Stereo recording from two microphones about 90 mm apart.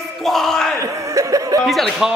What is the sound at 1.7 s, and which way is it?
Speech, centre (ahead or behind).